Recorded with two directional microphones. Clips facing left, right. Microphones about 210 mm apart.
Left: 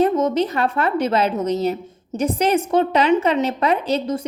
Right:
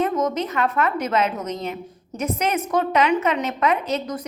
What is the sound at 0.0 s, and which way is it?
A woman's voice, 30° left (ahead or behind).